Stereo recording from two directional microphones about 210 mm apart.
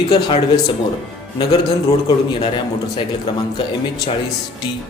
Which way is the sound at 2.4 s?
20° left (ahead or behind).